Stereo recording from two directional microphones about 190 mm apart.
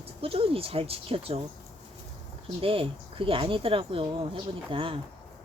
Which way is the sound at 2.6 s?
30° right (ahead or behind).